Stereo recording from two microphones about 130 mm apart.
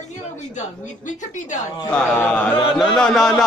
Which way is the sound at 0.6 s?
70° left (ahead or behind).